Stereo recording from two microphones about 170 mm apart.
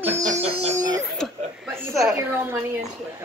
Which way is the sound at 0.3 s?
40° right (ahead or behind).